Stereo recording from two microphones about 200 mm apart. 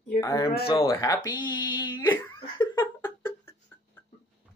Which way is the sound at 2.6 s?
20° left (ahead or behind).